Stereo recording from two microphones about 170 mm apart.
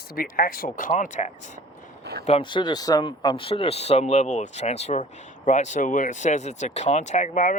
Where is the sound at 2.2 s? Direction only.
30° left (ahead or behind).